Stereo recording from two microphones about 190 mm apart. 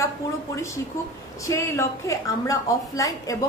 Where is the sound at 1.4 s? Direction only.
15° left (ahead or behind).